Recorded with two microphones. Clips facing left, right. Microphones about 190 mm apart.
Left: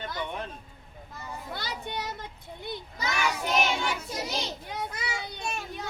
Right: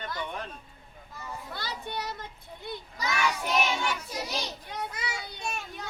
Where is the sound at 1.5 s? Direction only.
20° left (ahead or behind).